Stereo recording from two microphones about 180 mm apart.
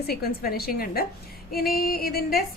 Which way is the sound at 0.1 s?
60° left (ahead or behind).